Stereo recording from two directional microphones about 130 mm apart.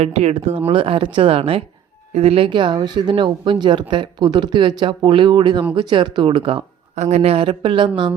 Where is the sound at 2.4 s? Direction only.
40° right (ahead or behind).